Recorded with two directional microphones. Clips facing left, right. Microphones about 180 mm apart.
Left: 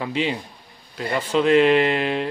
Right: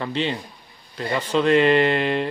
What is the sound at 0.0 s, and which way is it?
A man's voice, 5° left (ahead or behind).